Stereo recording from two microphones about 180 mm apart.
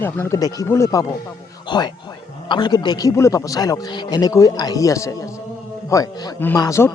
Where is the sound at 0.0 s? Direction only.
15° left (ahead or behind).